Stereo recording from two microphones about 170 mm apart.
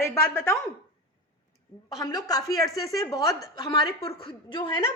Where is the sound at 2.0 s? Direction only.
20° left (ahead or behind).